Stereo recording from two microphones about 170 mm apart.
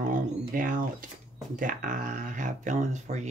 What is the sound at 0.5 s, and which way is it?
Speech, 50° right (ahead or behind).